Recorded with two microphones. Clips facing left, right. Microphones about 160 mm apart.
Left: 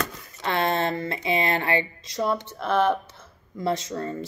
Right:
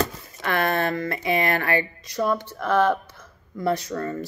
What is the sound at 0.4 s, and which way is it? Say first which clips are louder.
Speech: right 1 dB; 25° left (ahead or behind).